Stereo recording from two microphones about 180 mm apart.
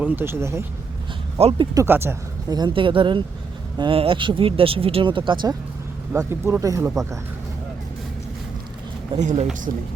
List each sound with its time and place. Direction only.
0.0 s speech: 10° right (ahead or behind)
1.4 s speech: 35° right (ahead or behind)
1.7 s speech: 15° right (ahead or behind)
6.1 s speech: 15° right (ahead or behind)
9.1 s speech: 40° right (ahead or behind)